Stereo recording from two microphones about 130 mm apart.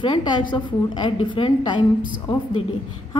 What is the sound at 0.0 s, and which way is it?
A woman's voice, 35° left (ahead or behind).